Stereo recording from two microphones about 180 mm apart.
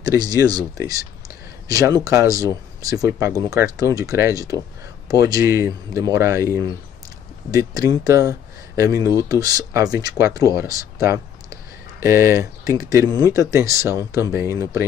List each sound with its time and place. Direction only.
0.0 s speech: 20° right (ahead or behind)
1.7 s speech: 20° right (ahead or behind)